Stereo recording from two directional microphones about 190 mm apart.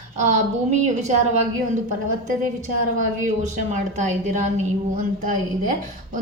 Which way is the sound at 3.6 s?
40° right (ahead or behind).